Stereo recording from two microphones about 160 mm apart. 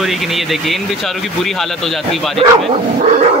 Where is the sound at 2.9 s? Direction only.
45° right (ahead or behind).